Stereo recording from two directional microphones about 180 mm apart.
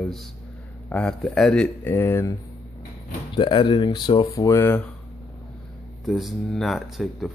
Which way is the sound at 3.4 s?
25° left (ahead or behind).